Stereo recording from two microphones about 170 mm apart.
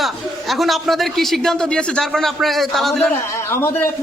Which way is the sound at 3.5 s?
15° left (ahead or behind).